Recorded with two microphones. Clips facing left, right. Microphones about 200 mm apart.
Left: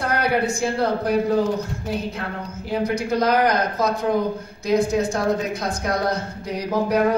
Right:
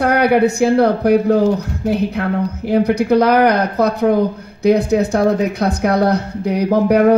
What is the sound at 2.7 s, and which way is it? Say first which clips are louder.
Speech: right 9 dB; 65° right (ahead or behind).